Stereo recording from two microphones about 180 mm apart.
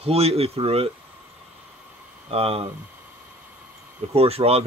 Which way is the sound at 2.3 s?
35° right (ahead or behind).